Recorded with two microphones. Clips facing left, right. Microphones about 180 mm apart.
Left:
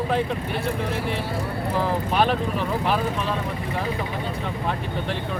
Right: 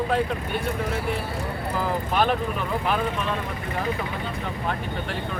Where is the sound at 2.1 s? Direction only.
Centre (ahead or behind).